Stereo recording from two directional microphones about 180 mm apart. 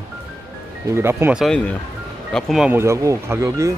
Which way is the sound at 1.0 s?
10° right (ahead or behind).